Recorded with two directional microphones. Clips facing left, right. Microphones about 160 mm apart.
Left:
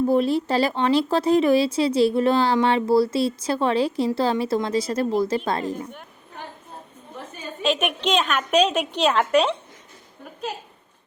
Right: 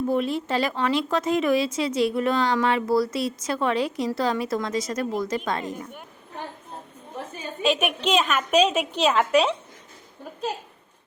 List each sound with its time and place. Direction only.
0.1 s speech: 35° left (ahead or behind)
7.6 s a woman's voice: 5° right (ahead or behind)